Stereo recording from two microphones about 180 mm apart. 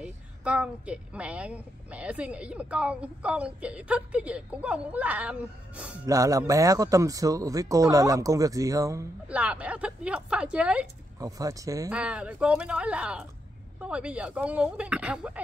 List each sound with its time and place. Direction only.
0.0 s a woman's voice: 5° right (ahead or behind)
6.0 s a man's voice: 20° right (ahead or behind)
9.3 s a woman's voice: 5° right (ahead or behind)
11.1 s a man's voice: 20° right (ahead or behind)
11.9 s a woman's voice: 5° right (ahead or behind)